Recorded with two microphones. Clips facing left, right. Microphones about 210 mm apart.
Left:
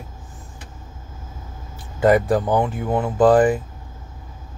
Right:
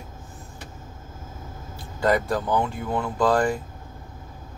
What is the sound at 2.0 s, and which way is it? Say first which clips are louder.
Speech: left 6 dB; 15° left (ahead or behind).